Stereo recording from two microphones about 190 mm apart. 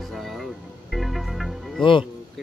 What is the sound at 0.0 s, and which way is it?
Music, centre (ahead or behind).